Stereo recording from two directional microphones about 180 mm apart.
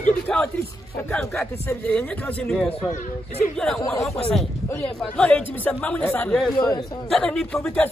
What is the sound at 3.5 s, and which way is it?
Speech, 5° left (ahead or behind).